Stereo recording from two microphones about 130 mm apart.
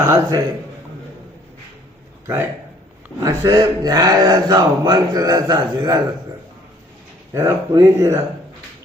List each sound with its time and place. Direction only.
0.0 s speech: 25° right (ahead or behind)
3.2 s speech: 30° right (ahead or behind)
7.3 s speech: 20° right (ahead or behind)